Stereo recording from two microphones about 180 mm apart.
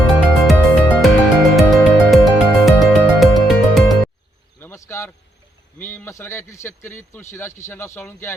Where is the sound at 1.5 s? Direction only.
Centre (ahead or behind).